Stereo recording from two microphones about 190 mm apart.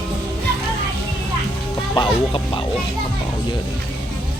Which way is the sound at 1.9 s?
25° left (ahead or behind).